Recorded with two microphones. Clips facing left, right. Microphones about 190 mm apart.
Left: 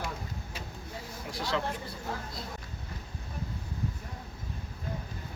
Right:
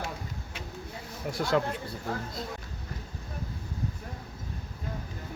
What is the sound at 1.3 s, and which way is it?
Speech, 50° right (ahead or behind).